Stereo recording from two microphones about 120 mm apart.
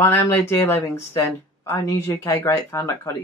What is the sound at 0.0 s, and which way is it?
Speech, 20° left (ahead or behind).